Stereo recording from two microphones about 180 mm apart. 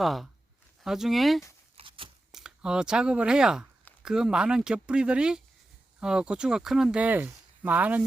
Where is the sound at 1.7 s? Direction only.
30° right (ahead or behind).